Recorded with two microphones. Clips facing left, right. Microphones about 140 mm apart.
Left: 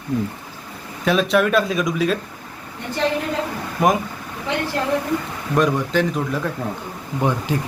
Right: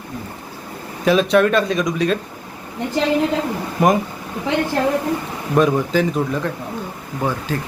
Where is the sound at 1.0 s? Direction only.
Centre (ahead or behind).